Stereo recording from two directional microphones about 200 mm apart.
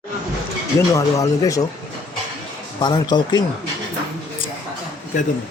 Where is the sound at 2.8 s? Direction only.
20° left (ahead or behind).